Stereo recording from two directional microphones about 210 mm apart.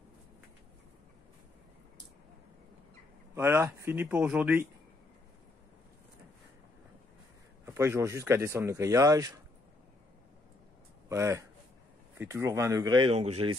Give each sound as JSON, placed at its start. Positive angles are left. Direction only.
{"t": 3.3, "sound": "speech", "side_deg": -10}
{"t": 7.6, "sound": "speech", "side_deg": -10}
{"t": 11.1, "sound": "a man's voice", "side_deg": -15}